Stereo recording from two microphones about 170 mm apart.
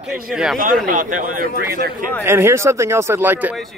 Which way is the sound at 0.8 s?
50° right (ahead or behind).